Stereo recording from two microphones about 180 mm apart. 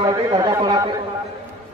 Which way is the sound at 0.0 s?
20° right (ahead or behind).